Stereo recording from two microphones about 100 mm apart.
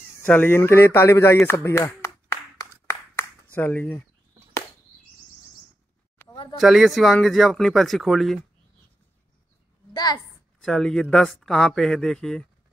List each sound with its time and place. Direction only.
0.2 s a sound: 15° left (ahead or behind); by 3.3 s 35° left (ahead or behind)
3.5 s speech: 20° left (ahead or behind)
6.2 s a sound: 20° left (ahead or behind)
6.5 s speech: centre (ahead or behind)
9.9 s a child's voice: 45° left (ahead or behind)
10.6 s speech: 5° left (ahead or behind)